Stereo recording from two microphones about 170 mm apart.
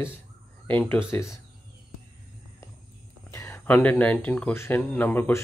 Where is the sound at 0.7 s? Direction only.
10° left (ahead or behind).